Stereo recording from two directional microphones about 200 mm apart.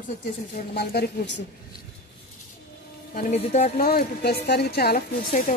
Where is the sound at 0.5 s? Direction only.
50° left (ahead or behind).